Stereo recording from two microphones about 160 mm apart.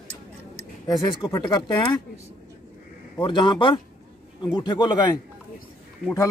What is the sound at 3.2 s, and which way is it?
A man's voice, 30° left (ahead or behind).